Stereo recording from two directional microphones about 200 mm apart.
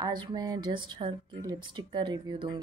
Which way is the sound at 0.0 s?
20° right (ahead or behind).